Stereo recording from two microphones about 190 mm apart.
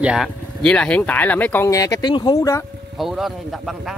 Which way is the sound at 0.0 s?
Centre (ahead or behind).